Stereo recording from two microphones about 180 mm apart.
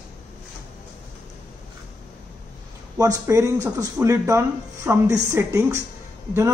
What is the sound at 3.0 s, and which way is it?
Speech, 20° right (ahead or behind).